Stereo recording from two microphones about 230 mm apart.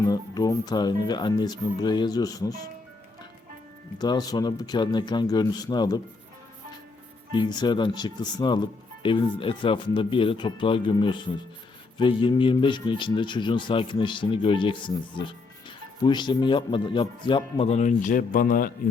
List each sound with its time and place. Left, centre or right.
0.0 s speech: centre
3.9 s speech: centre
7.3 s speech: centre; by 18.7 s left